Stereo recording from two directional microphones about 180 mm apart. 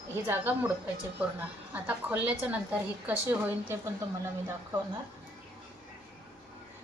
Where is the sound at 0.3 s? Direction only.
10° right (ahead or behind).